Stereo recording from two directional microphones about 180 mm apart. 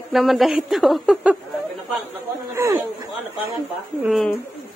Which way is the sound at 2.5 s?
15° right (ahead or behind).